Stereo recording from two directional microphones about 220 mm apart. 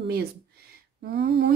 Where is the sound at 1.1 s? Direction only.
50° right (ahead or behind).